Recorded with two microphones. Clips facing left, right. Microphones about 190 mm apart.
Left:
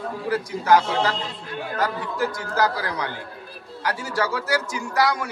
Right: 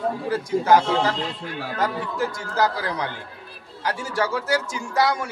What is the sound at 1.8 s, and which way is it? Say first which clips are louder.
Speech: even; 25° right (ahead or behind).